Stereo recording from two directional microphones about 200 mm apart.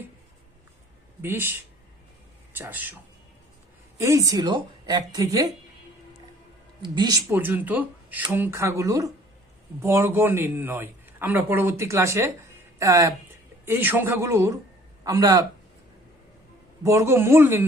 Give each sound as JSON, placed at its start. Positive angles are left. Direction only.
{"t": 1.2, "sound": "a man's voice", "side_deg": -10}
{"t": 2.6, "sound": "a man's voice", "side_deg": -10}
{"t": 3.9, "sound": "a man's voice", "side_deg": -15}
{"t": 6.8, "sound": "a man's voice", "side_deg": -20}
{"t": 16.8, "sound": "a man's voice", "side_deg": -15}